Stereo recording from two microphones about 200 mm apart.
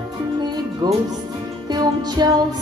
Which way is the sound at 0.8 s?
20° right (ahead or behind).